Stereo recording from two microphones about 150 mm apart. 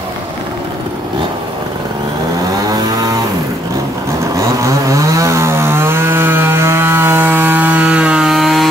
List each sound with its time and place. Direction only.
2.6 s vehicle: 25° right (ahead or behind)
4.4 s chainsaw: 20° right (ahead or behind); by 8.6 s centre (ahead or behind)